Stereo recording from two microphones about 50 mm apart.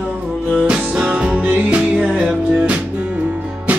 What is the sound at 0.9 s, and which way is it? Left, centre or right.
Music, right.